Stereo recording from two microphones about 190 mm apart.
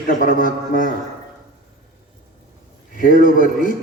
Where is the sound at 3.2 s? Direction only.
45° left (ahead or behind).